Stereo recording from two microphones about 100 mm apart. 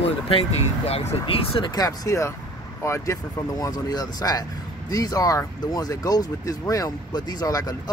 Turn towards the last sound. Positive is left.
turn(degrees=40)  # may be behind; listen again after turning